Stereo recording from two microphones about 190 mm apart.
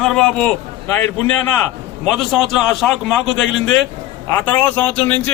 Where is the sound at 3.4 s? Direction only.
90° left.